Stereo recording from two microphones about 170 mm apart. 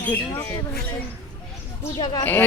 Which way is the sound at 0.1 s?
15° left (ahead or behind).